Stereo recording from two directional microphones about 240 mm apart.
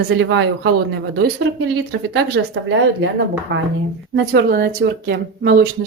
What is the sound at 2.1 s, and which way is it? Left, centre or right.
A woman's voice, right.